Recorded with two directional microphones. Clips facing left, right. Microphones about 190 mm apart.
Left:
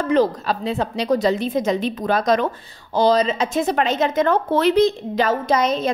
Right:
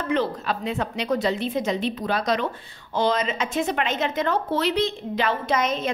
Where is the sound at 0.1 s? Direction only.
40° left (ahead or behind).